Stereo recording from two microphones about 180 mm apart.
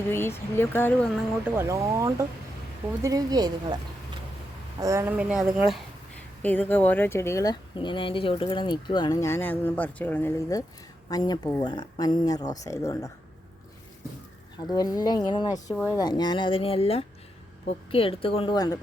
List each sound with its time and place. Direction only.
0.1 s speech: 15° left (ahead or behind)
1.5 s speech: 15° right (ahead or behind)
4.8 s speech: 15° right (ahead or behind); by 9.1 s 25° left (ahead or behind)
9.2 s speech: 10° left (ahead or behind)
14.7 s a woman's voice: 20° left (ahead or behind)